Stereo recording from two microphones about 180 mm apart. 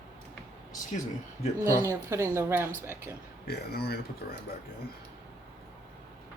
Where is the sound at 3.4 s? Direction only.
60° left (ahead or behind).